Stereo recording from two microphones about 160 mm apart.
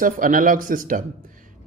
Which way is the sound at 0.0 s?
60° right (ahead or behind).